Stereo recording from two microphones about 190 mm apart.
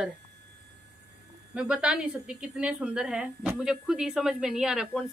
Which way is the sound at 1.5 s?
5° right (ahead or behind).